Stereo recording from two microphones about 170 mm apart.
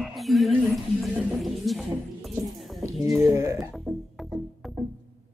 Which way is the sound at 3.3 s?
20° right (ahead or behind).